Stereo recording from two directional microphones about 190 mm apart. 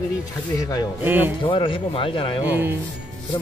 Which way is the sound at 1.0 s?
10° right (ahead or behind).